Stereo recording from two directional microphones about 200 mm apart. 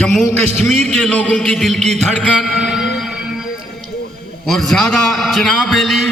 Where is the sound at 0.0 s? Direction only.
Centre (ahead or behind).